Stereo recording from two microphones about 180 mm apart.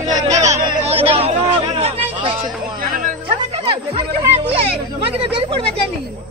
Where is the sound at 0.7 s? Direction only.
30° right (ahead or behind).